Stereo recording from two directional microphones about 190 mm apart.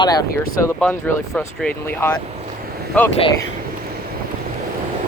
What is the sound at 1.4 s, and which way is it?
Speech, 10° left (ahead or behind).